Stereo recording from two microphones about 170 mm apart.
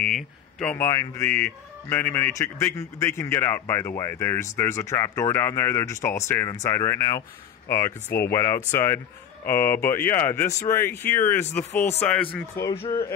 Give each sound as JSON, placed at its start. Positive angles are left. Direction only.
{"t": 0.0, "sound": "a man's voice", "side_deg": 5}